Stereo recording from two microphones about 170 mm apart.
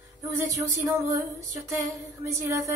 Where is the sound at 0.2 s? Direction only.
15° right (ahead or behind).